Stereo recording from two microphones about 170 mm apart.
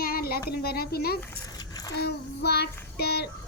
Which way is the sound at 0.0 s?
60° left (ahead or behind).